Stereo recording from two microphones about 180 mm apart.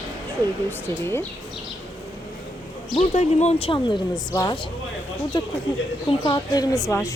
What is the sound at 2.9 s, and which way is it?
Speech, 40° left (ahead or behind).